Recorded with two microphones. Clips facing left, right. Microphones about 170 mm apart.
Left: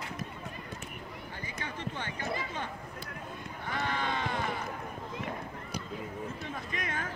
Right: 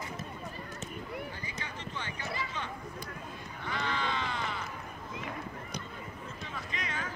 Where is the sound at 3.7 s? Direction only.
50° left (ahead or behind).